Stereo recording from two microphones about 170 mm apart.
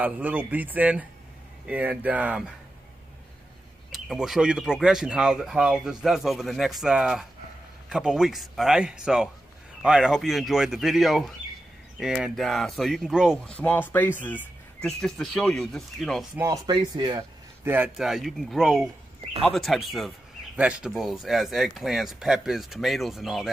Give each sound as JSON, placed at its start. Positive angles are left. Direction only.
{"t": 0.0, "sound": "speech", "side_deg": -10}
{"t": 3.9, "sound": "speech", "side_deg": 0}
{"t": 13.6, "sound": "speech", "side_deg": 10}
{"t": 16.3, "sound": "speech", "side_deg": -20}
{"t": 17.6, "sound": "speech", "side_deg": -10}